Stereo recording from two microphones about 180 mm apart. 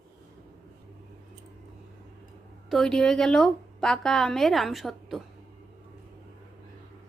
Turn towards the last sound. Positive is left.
turn(degrees=0)  # may be behind; listen again after turning